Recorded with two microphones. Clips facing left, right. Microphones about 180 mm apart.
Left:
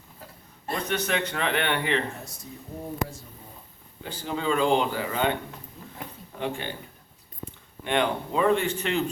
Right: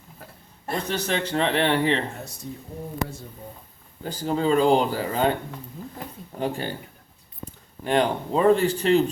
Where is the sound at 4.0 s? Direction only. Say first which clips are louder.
Right 6 dB; 40° right (ahead or behind).